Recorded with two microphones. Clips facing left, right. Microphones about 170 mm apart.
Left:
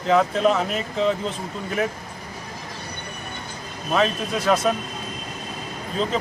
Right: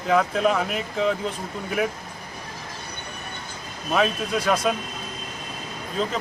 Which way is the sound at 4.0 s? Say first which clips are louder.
Left 1 dB; 5° right (ahead or behind).